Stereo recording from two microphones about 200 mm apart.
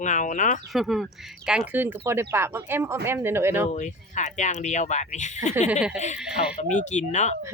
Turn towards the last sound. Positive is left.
turn(degrees=35)  # may be behind; listen again after turning